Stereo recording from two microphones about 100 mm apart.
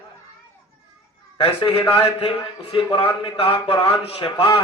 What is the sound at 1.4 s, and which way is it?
Speech, 70° left (ahead or behind).